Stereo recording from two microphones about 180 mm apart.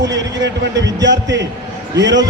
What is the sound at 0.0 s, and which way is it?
Speech, 80° right.